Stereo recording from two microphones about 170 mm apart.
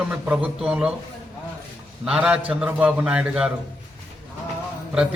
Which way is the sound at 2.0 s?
5° right (ahead or behind).